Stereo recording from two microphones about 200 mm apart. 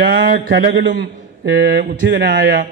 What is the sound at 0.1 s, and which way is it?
A man's voice, 65° right (ahead or behind).